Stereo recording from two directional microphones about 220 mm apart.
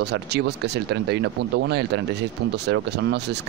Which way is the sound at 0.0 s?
50° right (ahead or behind).